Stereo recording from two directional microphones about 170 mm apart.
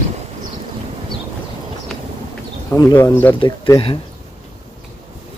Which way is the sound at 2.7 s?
20° left (ahead or behind).